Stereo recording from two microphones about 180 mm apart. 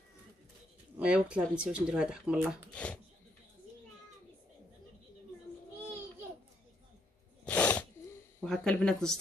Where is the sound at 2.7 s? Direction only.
5° left (ahead or behind).